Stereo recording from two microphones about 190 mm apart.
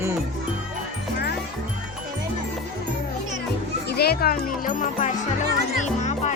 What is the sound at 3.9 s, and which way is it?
Speech, 55° left (ahead or behind).